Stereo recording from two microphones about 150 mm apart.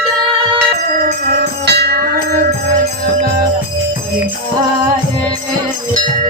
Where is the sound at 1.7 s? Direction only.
90° right.